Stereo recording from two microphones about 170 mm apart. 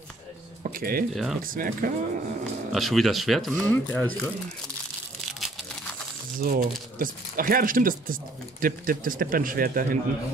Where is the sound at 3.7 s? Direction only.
10° left (ahead or behind).